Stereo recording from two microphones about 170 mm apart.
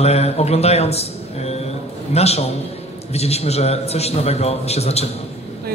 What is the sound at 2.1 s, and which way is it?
A man's voice, 40° left (ahead or behind).